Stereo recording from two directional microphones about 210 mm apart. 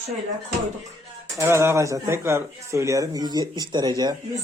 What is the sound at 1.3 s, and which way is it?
Speech, 15° right (ahead or behind).